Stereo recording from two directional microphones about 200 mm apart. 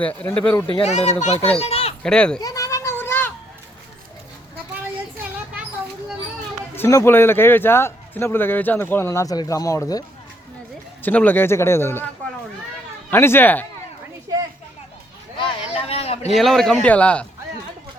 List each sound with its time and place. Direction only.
0.0 s speech: 10° left (ahead or behind)
0.7 s a child's voice: 30° left (ahead or behind)
2.0 s speech: 5° left (ahead or behind)
2.4 s a sound: 15° left (ahead or behind)
6.7 s speech: 10° left (ahead or behind)
11.0 s speech: 10° left (ahead or behind)
13.1 s speech: 10° left (ahead or behind)
15.4 s a sound: 25° left (ahead or behind)
16.3 s speech: centre (ahead or behind)